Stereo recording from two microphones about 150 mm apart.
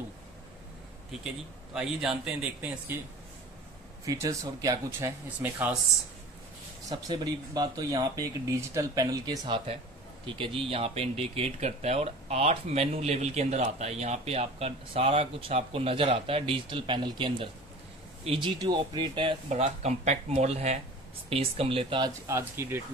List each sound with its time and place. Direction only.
1.7 s speech: 5° right (ahead or behind)
4.0 s speech: 20° right (ahead or behind)
5.4 s speech: 10° right (ahead or behind)
6.9 s speech: 25° right (ahead or behind)
18.6 s speech: 30° right (ahead or behind)
19.5 s speech: 45° right (ahead or behind)
22.2 s speech: 15° right (ahead or behind)